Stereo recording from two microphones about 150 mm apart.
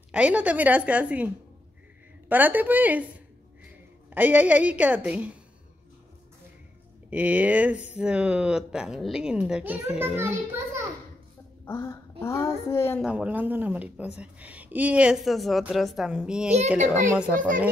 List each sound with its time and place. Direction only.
0.1 s a woman's voice: 10° right (ahead or behind)
4.1 s a woman's voice: 10° right (ahead or behind)
7.1 s a woman's voice: 10° right (ahead or behind)
11.6 s speech: 15° left (ahead or behind)
13.0 s a woman's voice: 10° right (ahead or behind)
16.7 s a child's voice: 50° right (ahead or behind)